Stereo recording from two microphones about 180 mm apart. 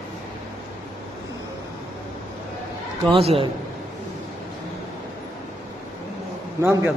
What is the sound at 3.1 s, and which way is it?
Speech, 30° right (ahead or behind).